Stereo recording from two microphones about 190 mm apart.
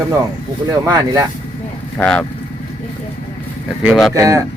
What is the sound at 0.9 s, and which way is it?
Speech, 15° right (ahead or behind).